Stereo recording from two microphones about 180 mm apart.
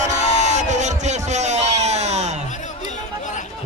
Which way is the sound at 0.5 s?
40° right (ahead or behind).